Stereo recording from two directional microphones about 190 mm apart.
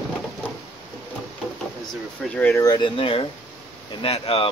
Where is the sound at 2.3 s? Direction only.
10° left (ahead or behind).